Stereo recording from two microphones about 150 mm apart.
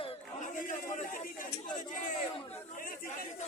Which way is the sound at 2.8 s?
70° left (ahead or behind).